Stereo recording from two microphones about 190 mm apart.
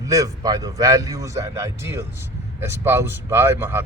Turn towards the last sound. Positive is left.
turn(degrees=-10)  # may be behind; listen again after turning